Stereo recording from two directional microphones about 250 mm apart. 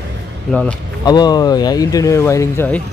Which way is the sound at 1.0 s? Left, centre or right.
Centre.